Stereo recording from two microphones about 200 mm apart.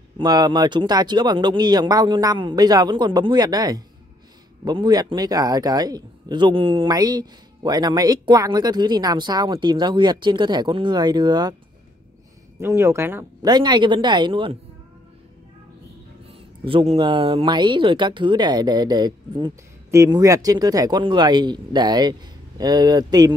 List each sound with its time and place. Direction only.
0.2 s speech: 20° right (ahead or behind)
12.5 s speech: 15° right (ahead or behind)
16.3 s speech: 25° right (ahead or behind)